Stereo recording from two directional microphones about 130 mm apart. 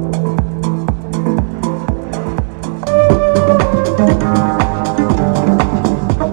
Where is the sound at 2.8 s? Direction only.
5° left (ahead or behind).